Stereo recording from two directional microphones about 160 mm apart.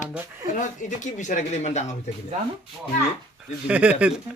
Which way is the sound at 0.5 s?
50° left (ahead or behind).